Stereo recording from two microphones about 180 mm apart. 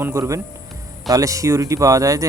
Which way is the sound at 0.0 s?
15° right (ahead or behind).